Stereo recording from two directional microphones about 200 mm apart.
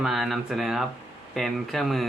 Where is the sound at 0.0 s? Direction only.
Centre (ahead or behind).